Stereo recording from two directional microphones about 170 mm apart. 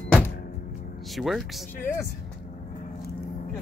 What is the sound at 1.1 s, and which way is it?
Speech, centre (ahead or behind).